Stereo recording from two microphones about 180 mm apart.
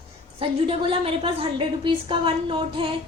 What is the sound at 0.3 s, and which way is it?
A woman's voice, 30° right (ahead or behind).